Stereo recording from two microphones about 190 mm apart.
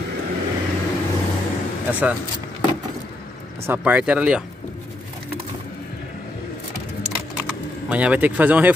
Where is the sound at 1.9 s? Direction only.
10° right (ahead or behind).